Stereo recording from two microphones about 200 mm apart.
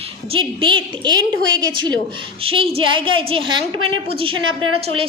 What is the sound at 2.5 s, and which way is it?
A woman's voice, 30° right (ahead or behind).